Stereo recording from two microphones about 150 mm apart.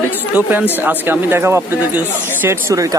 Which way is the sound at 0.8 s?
10° right (ahead or behind).